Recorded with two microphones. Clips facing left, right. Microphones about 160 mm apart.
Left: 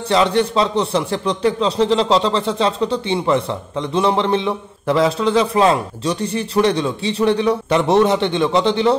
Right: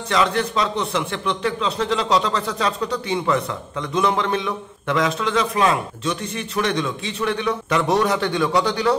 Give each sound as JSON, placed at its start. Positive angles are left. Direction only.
{"t": 0.1, "sound": "a man's voice", "side_deg": 30}